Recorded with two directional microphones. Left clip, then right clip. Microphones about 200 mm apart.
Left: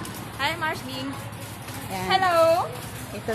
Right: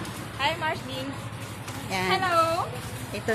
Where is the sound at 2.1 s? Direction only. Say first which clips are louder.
Left 4 dB; 55° left (ahead or behind).